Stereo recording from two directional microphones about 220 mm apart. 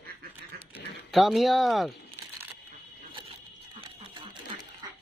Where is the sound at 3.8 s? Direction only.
25° right (ahead or behind).